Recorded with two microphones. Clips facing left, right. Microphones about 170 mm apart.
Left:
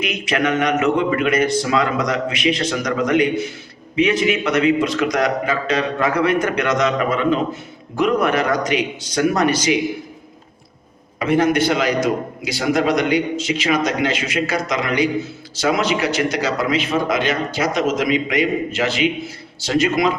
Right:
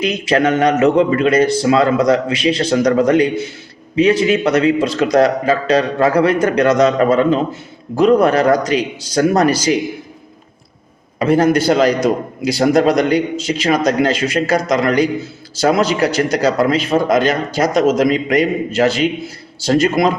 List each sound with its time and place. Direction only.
0.0 s a man's voice: 35° right (ahead or behind)
11.2 s a man's voice: 35° right (ahead or behind)